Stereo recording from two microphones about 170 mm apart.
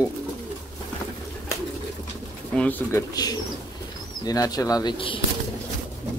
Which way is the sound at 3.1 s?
20° left (ahead or behind).